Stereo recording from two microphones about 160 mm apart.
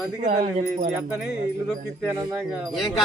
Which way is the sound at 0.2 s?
50° right (ahead or behind).